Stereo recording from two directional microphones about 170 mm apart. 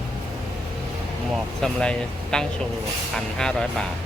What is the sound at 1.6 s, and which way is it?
Speech, 5° left (ahead or behind).